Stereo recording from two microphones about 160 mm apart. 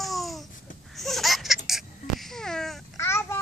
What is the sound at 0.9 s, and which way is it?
Laughter, centre (ahead or behind).